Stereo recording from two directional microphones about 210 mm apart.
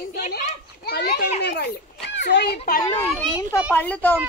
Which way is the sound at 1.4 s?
55° left (ahead or behind).